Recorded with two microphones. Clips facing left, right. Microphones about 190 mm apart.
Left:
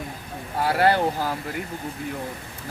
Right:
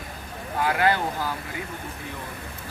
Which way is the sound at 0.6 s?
35° left (ahead or behind).